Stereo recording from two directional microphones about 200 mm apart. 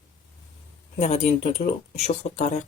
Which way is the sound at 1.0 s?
35° left (ahead or behind).